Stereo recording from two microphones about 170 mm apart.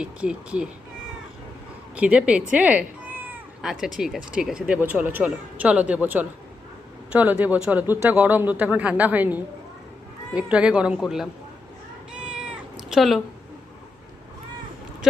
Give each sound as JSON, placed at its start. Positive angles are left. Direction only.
{"t": 0.0, "sound": "a man's voice", "side_deg": -5}
{"t": 2.0, "sound": "a man's voice", "side_deg": -5}
{"t": 12.1, "sound": "cat", "side_deg": -5}
{"t": 12.9, "sound": "speech", "side_deg": 0}